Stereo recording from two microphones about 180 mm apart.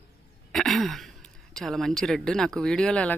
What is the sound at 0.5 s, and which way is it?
Speech, centre (ahead or behind).